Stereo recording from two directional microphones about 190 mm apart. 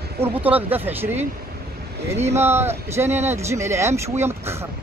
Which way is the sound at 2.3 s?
15° right (ahead or behind).